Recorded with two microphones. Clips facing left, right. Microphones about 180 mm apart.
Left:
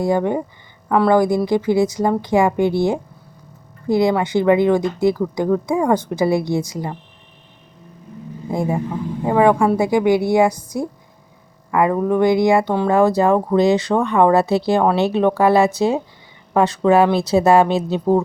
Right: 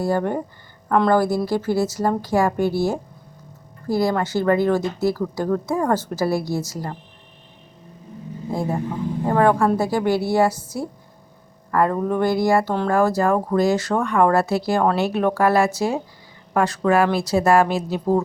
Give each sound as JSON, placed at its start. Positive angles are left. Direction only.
{"t": 0.0, "sound": "a woman's voice", "side_deg": 15}
{"t": 8.4, "sound": "a woman's voice", "side_deg": 15}
{"t": 11.7, "sound": "a woman's voice", "side_deg": 10}